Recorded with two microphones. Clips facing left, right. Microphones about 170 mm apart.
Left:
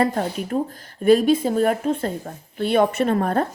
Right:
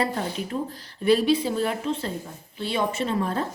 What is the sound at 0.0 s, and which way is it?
A woman's voice, 45° left (ahead or behind).